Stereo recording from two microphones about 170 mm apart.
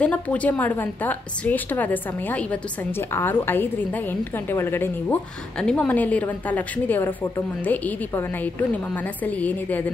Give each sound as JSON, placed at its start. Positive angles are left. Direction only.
{"t": 0.0, "sound": "a woman's voice", "side_deg": 10}